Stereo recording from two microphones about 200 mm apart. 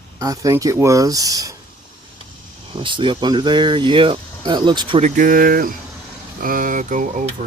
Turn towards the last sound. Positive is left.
turn(degrees=-40)  # may be behind; listen again after turning